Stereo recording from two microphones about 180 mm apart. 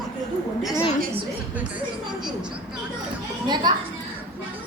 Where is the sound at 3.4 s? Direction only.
25° right (ahead or behind).